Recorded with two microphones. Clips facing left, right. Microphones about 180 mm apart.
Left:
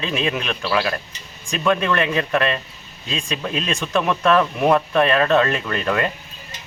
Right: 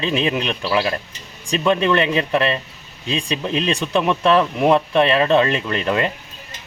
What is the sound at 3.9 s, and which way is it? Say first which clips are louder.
Speech: right 1 dB; 20° right (ahead or behind).